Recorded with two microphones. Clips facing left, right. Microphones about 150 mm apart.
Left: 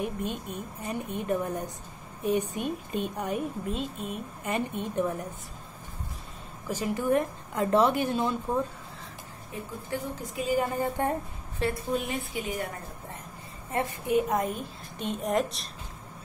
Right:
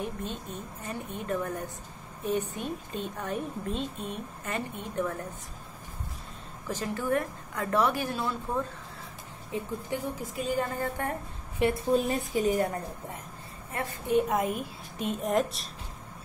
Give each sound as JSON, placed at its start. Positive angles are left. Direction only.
{"t": 0.0, "sound": "a woman's voice", "side_deg": 15}
{"t": 4.5, "sound": "a woman's voice", "side_deg": 15}
{"t": 6.7, "sound": "a woman's voice", "side_deg": 15}
{"t": 9.9, "sound": "a woman's voice", "side_deg": -20}
{"t": 10.3, "sound": "a woman's voice", "side_deg": 5}
{"t": 11.9, "sound": "a woman's voice", "side_deg": -40}
{"t": 14.0, "sound": "a woman's voice", "side_deg": 5}